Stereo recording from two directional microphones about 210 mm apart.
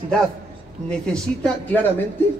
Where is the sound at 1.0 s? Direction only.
5° left (ahead or behind).